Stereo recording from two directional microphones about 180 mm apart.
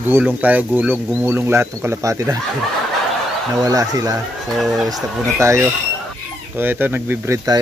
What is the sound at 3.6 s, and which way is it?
Speech, 20° right (ahead or behind).